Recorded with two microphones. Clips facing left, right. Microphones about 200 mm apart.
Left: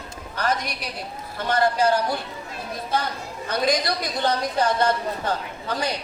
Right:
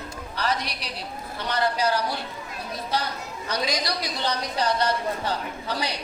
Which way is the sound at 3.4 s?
50° left (ahead or behind).